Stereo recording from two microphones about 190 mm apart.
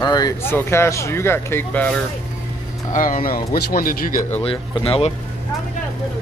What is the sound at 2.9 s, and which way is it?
A man's voice, 45° left (ahead or behind).